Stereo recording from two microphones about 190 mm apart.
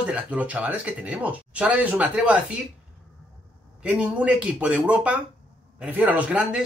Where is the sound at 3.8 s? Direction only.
5° right (ahead or behind).